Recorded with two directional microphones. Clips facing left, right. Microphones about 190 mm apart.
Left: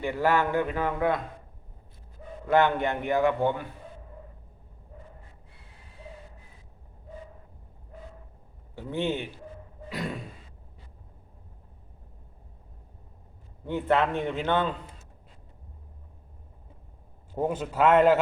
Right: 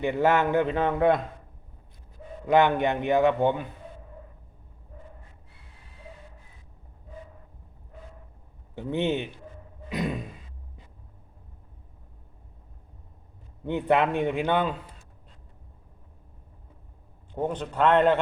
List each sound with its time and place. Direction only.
0.0 s speech: 20° right (ahead or behind)
2.5 s speech: 15° right (ahead or behind)
8.7 s speech: 20° right (ahead or behind)
9.9 s a sound: 20° right (ahead or behind)
13.7 s a man's voice: 15° right (ahead or behind)
17.3 s a man's voice: 5° left (ahead or behind)